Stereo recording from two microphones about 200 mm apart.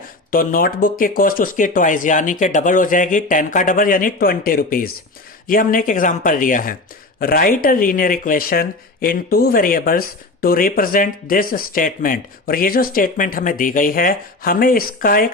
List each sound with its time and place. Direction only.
0.3 s speech: 45° left (ahead or behind)